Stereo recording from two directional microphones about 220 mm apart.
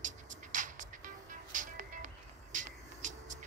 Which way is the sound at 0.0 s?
35° right (ahead or behind).